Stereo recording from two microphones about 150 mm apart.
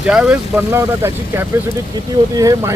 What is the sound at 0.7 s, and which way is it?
Speech, 20° right (ahead or behind).